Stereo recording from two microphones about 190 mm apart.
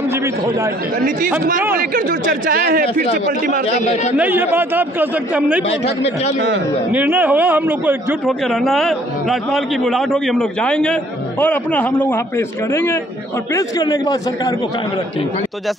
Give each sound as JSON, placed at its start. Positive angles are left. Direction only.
{"t": 0.1, "sound": "a man's voice", "side_deg": -15}
{"t": 1.8, "sound": "speech", "side_deg": -45}
{"t": 3.6, "sound": "speech", "side_deg": 35}
{"t": 4.2, "sound": "a man's voice", "side_deg": -10}
{"t": 6.9, "sound": "a man's voice", "side_deg": -10}